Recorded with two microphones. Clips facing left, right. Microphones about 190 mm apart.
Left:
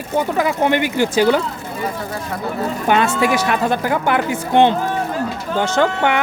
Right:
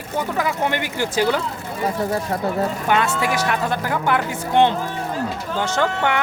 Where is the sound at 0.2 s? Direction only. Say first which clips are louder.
Left 4 dB; 20° left (ahead or behind).